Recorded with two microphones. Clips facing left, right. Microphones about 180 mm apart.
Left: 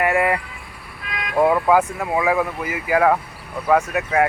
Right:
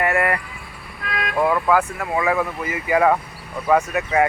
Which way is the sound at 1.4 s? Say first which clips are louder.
Left 3 dB; 20° left (ahead or behind).